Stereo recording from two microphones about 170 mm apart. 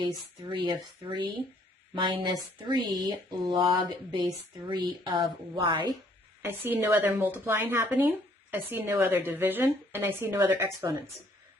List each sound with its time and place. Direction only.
0.0 s speech: 30° right (ahead or behind)
6.4 s speech: 10° right (ahead or behind)